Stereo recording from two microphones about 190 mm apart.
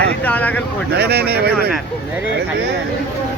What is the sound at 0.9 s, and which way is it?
Speech, 60° right (ahead or behind).